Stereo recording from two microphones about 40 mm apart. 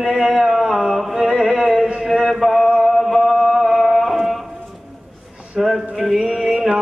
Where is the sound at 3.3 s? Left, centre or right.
Centre.